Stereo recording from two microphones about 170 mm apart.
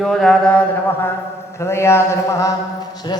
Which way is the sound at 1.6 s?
15° left (ahead or behind).